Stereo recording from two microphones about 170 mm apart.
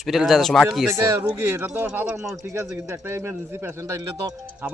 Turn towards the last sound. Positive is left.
turn(degrees=-15)  # may be behind; listen again after turning